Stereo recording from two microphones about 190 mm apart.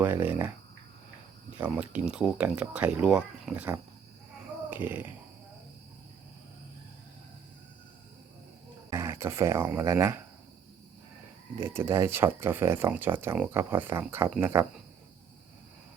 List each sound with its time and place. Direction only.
0.0 s speech: 10° right (ahead or behind)
1.5 s speech: 5° right (ahead or behind)
8.9 s speech: 15° right (ahead or behind)
11.5 s speech: 10° right (ahead or behind)